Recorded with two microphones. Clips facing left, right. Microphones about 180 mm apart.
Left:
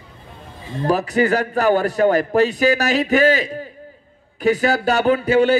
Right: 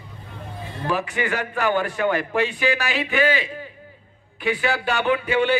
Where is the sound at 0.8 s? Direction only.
40° left (ahead or behind).